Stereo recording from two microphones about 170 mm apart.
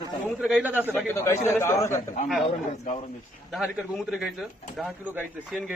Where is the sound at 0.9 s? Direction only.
15° left (ahead or behind).